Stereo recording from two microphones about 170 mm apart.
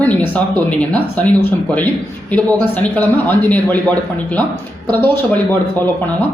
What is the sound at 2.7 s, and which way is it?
Speech, 10° left (ahead or behind).